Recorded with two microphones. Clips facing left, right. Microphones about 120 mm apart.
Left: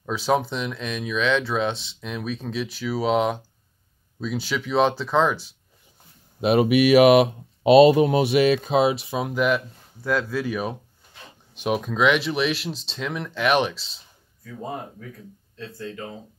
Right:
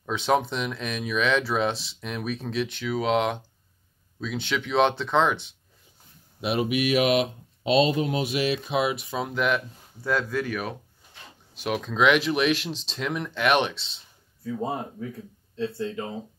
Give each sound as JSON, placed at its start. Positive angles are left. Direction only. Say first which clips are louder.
{"t": 0.0, "sound": "speech", "louder": "left 1 dB", "side_deg": 5}
{"t": 6.4, "sound": "speech", "louder": "left 7 dB", "side_deg": 55}
{"t": 8.6, "sound": "speech", "louder": "left 5 dB", "side_deg": 35}
{"t": 9.0, "sound": "speech", "louder": "left 3 dB", "side_deg": 15}
{"t": 9.3, "sound": "speech", "louder": "left 3 dB", "side_deg": 5}
{"t": 11.9, "sound": "speech", "louder": "right 1 dB", "side_deg": 0}
{"t": 14.4, "sound": "speech", "louder": "right 4 dB", "side_deg": -25}